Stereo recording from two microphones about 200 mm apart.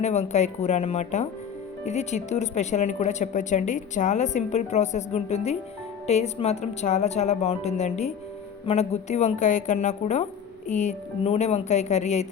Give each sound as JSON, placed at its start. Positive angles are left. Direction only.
{"t": 0.0, "sound": "speech", "side_deg": 35}